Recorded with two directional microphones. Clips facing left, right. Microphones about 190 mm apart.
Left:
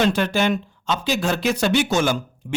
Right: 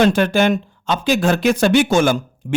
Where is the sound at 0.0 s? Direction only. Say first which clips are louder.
Right 5 dB; 50° right (ahead or behind).